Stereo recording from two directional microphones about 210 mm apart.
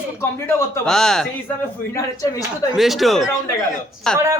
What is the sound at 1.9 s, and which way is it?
Speech, 15° left (ahead or behind).